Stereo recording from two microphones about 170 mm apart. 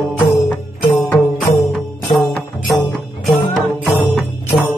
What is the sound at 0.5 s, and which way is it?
Music, 10° left (ahead or behind).